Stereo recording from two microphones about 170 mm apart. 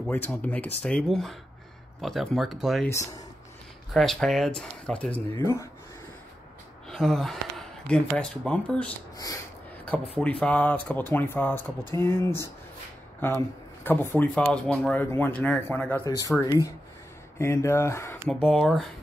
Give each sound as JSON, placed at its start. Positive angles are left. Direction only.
{"t": 0.0, "sound": "speech", "side_deg": 10}
{"t": 3.9, "sound": "speech", "side_deg": 0}
{"t": 5.4, "sound": "speech", "side_deg": 15}
{"t": 6.9, "sound": "a sound", "side_deg": 5}
{"t": 8.2, "sound": "speech", "side_deg": 5}
{"t": 9.1, "sound": "speech", "side_deg": 20}
{"t": 9.8, "sound": "speech", "side_deg": 10}
{"t": 13.8, "sound": "speech", "side_deg": 10}
{"t": 16.1, "sound": "speech", "side_deg": 20}
{"t": 18.3, "sound": "speech", "side_deg": 0}